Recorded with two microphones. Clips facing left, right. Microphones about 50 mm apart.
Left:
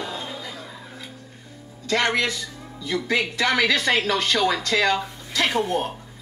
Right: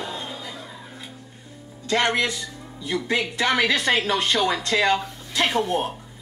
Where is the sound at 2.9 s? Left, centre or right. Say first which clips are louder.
Left 1 dB; centre.